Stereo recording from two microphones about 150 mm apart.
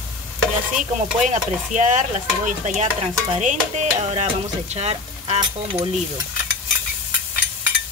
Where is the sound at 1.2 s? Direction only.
55° right (ahead or behind).